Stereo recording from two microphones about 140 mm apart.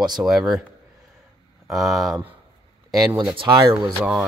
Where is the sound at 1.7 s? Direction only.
Centre (ahead or behind).